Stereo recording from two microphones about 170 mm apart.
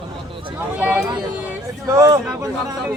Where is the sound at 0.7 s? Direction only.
10° right (ahead or behind).